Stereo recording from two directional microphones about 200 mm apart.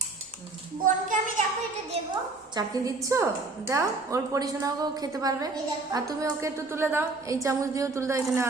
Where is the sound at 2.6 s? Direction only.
15° right (ahead or behind).